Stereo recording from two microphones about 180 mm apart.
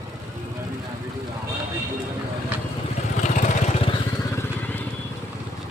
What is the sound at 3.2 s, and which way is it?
Vehicle, 40° left (ahead or behind).